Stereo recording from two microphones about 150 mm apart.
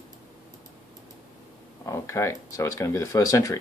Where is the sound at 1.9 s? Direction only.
20° left (ahead or behind).